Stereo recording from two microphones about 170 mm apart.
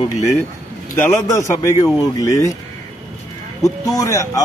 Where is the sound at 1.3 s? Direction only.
20° left (ahead or behind).